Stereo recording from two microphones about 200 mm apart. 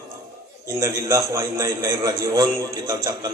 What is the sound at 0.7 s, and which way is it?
A man's voice, 15° right (ahead or behind).